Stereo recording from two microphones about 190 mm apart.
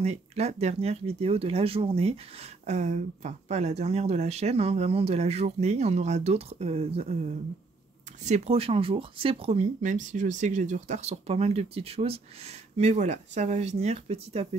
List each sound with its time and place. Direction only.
0.0 s speech: 35° right (ahead or behind)